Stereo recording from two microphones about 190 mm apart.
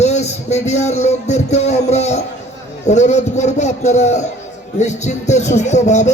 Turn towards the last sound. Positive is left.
turn(degrees=35)  # may be behind; listen again after turning